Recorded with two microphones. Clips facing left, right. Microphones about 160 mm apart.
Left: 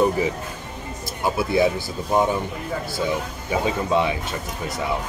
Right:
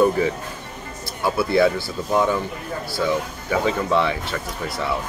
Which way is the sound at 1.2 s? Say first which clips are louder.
Right 2 dB; 20° left (ahead or behind).